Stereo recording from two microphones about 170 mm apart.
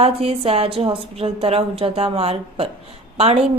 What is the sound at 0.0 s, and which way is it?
A woman's voice, 35° right (ahead or behind).